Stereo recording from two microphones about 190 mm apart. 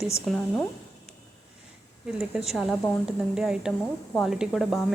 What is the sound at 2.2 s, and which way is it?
Speech, centre (ahead or behind).